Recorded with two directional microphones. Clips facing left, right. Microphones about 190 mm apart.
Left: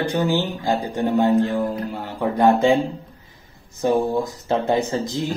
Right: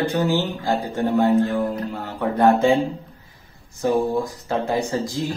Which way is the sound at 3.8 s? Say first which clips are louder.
Left 1 dB; 20° left (ahead or behind).